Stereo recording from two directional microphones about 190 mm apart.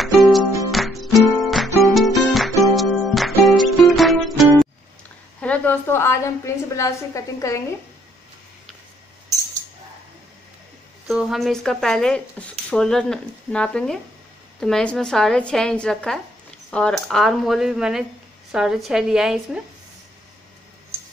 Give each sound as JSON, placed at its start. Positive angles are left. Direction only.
{"t": 0.0, "sound": "music", "side_deg": 0}
{"t": 5.4, "sound": "a woman's voice", "side_deg": 5}
{"t": 11.1, "sound": "speech", "side_deg": -5}